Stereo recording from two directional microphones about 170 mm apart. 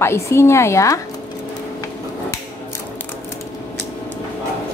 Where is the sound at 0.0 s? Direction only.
15° left (ahead or behind).